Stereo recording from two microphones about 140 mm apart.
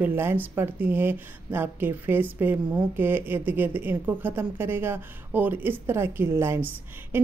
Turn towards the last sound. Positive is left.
turn(degrees=-15)  # may be behind; listen again after turning